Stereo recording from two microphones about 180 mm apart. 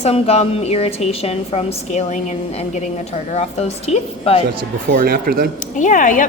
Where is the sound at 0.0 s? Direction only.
35° left (ahead or behind).